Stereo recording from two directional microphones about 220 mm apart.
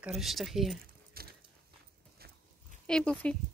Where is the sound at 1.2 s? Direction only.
45° right (ahead or behind).